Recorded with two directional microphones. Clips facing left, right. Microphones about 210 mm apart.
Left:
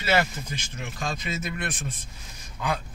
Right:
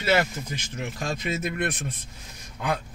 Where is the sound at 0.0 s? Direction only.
60° right (ahead or behind).